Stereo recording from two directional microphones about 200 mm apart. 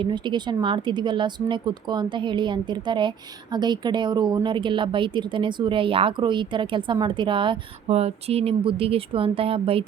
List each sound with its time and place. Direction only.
0.0 s speech: 25° right (ahead or behind)